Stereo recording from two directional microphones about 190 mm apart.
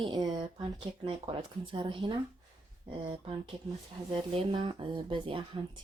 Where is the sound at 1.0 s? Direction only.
25° right (ahead or behind).